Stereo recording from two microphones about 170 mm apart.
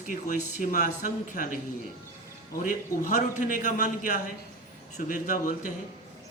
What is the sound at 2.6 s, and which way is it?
A man's voice, 50° left (ahead or behind).